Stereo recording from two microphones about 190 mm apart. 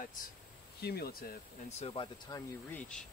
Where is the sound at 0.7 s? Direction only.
55° left (ahead or behind).